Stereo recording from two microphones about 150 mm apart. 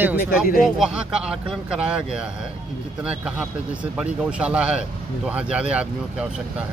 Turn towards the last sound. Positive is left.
turn(degrees=-5)  # may be behind; listen again after turning